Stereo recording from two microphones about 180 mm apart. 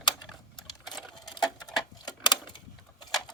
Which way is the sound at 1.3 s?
20° left (ahead or behind).